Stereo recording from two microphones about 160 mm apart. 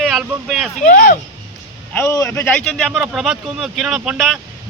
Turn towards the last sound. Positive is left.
turn(degrees=0)  # may be behind; listen again after turning